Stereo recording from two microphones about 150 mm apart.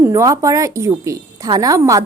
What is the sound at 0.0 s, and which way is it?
Speech, 20° right (ahead or behind).